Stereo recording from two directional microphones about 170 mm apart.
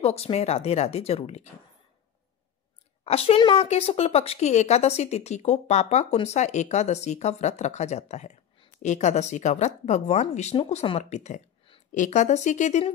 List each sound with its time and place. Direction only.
0.0 s speech: 35° left (ahead or behind)
3.0 s speech: 35° left (ahead or behind)